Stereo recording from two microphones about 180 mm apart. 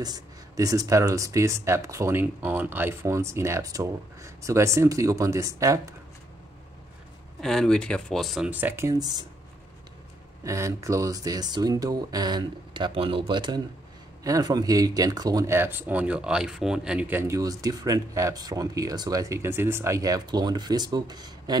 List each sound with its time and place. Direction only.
0.0 s speech: 20° right (ahead or behind)
7.3 s speech: centre (ahead or behind); by 9.2 s 20° right (ahead or behind)
10.4 s speech: 15° right (ahead or behind)